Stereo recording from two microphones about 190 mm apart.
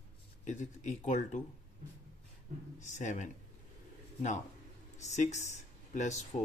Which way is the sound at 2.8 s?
40° left (ahead or behind).